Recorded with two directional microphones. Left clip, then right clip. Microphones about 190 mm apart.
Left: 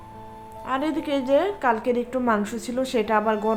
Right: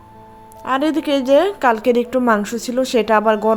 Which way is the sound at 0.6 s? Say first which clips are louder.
Right 8 dB; 45° right (ahead or behind).